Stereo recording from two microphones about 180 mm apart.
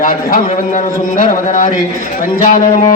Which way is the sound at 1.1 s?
45° left (ahead or behind).